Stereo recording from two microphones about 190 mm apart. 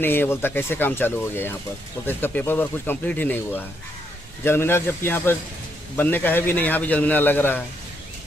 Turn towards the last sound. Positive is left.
turn(degrees=10)  # may be behind; listen again after turning